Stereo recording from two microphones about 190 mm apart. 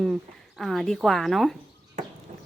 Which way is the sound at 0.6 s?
Centre (ahead or behind).